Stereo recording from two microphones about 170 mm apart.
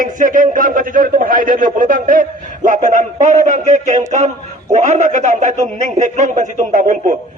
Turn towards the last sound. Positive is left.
turn(degrees=-50)  # may be behind; listen again after turning